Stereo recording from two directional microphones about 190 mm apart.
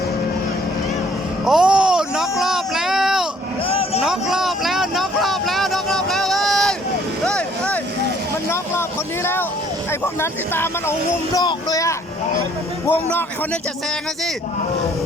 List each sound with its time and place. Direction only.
1.5 s a sound: 5° right (ahead or behind)
2.4 s child singing: centre (ahead or behind)
3.7 s vehicle: 30° left (ahead or behind)
4.0 s vehicle: centre (ahead or behind)
9.2 s vehicle: 10° left (ahead or behind)
9.9 s a man's voice: 10° left (ahead or behind)